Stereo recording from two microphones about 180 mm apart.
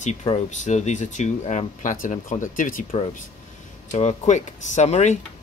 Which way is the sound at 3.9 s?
40° left (ahead or behind).